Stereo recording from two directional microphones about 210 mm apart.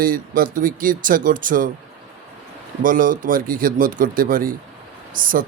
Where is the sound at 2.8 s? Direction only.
40° right (ahead or behind).